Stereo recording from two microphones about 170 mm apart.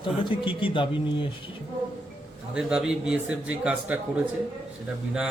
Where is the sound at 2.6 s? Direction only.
5° right (ahead or behind).